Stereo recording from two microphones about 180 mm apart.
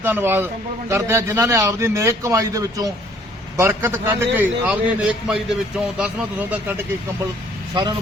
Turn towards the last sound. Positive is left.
turn(degrees=-25)  # may be behind; listen again after turning